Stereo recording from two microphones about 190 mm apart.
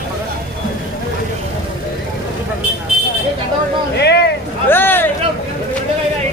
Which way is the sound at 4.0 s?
60° left (ahead or behind).